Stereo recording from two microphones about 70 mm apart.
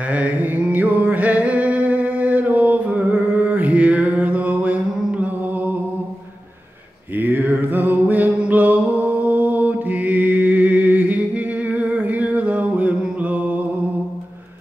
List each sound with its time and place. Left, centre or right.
0.1 s music: right
7.2 s music: right
13.0 s mantra: centre